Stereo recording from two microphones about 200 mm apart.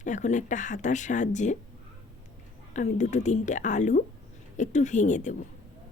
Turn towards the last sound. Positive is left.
turn(degrees=40)  # may be behind; listen again after turning